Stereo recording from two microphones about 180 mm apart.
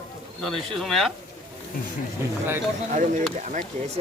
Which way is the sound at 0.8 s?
Centre (ahead or behind).